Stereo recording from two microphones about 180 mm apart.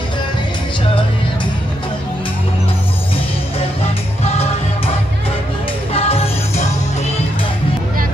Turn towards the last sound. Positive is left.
turn(degrees=35)  # may be behind; listen again after turning